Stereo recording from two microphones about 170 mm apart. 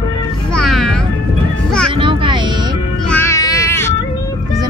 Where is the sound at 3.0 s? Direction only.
15° left (ahead or behind).